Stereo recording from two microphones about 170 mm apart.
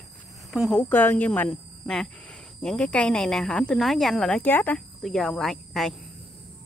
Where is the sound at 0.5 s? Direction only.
Centre (ahead or behind).